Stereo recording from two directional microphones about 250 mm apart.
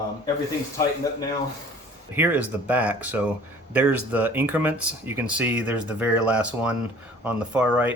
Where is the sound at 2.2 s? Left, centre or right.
Centre.